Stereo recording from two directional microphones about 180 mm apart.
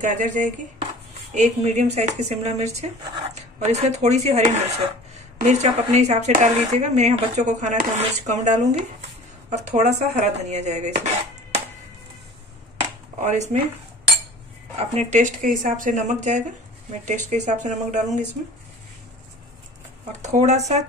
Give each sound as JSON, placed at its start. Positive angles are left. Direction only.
{"t": 0.0, "sound": "speech", "side_deg": -45}
{"t": 13.2, "sound": "speech", "side_deg": -40}
{"t": 14.8, "sound": "speech", "side_deg": -40}
{"t": 20.2, "sound": "speech", "side_deg": -40}